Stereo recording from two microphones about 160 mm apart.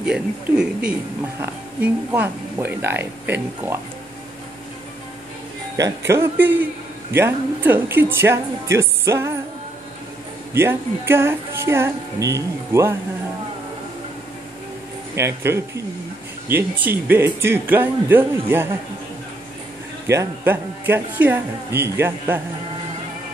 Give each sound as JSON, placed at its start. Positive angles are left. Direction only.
{"t": 0.0, "sound": "a man's voice", "side_deg": -5}
{"t": 5.8, "sound": "a man's voice", "side_deg": -20}
{"t": 10.5, "sound": "a man's voice", "side_deg": -15}
{"t": 15.1, "sound": "a man's voice", "side_deg": -15}
{"t": 20.1, "sound": "a man's voice", "side_deg": -15}